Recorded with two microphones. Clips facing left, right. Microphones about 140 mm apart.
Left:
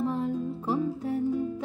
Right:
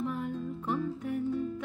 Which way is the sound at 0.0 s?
30° left (ahead or behind).